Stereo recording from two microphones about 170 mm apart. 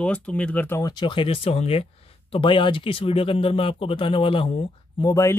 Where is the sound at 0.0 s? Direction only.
5° left (ahead or behind); by 4.5 s 30° left (ahead or behind).